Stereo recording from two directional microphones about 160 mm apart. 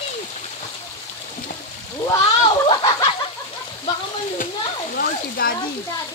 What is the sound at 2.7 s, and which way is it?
Speech, 30° left (ahead or behind).